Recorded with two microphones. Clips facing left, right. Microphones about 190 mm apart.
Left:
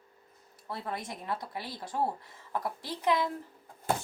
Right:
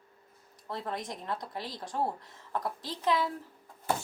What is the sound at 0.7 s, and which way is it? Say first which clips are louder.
A woman's voice: right 1 dB; 10° left (ahead or behind).